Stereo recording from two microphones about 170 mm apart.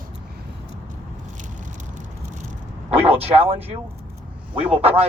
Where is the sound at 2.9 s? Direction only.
35° right (ahead or behind).